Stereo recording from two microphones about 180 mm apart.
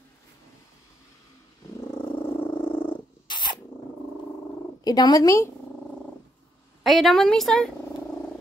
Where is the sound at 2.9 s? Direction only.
25° left (ahead or behind).